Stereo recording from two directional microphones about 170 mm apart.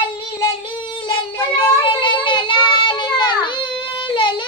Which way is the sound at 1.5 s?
30° left (ahead or behind).